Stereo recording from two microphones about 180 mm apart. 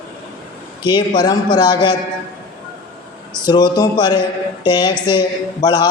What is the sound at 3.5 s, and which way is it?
A woman's voice, 20° left (ahead or behind).